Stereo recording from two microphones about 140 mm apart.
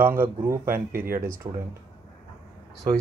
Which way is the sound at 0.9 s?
90° right.